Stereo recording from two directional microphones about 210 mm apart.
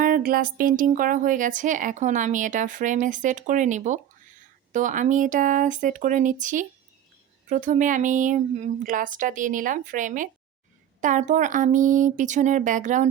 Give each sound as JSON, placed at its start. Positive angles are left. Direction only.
{"t": 0.0, "sound": "speech", "side_deg": -45}